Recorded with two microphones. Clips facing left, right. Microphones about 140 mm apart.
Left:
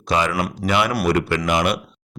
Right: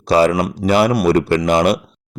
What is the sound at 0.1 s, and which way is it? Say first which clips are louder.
Speech: right 7 dB; 35° right (ahead or behind).